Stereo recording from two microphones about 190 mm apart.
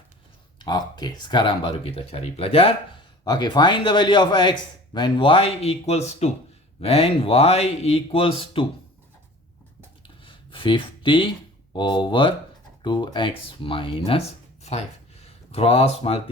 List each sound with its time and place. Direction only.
0.6 s speech: 20° left (ahead or behind)
10.2 s a sound: 25° left (ahead or behind)
11.7 s speech: 25° left (ahead or behind)